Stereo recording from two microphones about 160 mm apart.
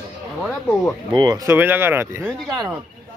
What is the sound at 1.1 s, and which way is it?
Speech, 25° right (ahead or behind).